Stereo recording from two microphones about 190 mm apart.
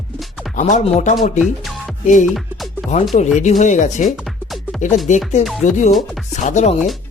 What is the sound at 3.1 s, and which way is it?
Speech, 40° left (ahead or behind).